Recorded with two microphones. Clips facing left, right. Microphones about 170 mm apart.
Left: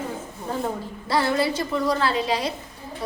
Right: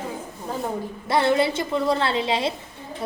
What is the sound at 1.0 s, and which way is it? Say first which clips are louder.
A woman's voice: right 2 dB; 25° right (ahead or behind).